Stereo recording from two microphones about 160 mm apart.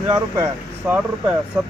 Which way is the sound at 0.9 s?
10° right (ahead or behind).